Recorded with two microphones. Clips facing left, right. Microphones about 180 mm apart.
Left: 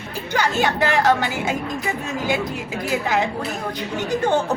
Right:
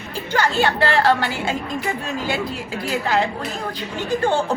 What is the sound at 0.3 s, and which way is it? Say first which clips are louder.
A woman's voice: right 1 dB; 15° left (ahead or behind).